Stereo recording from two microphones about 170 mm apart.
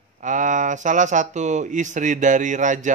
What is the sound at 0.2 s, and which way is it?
Speech, 45° right (ahead or behind).